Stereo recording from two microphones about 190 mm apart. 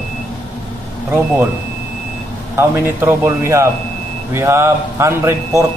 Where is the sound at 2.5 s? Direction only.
10° right (ahead or behind).